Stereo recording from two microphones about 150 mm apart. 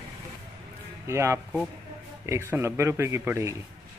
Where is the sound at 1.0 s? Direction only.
20° right (ahead or behind).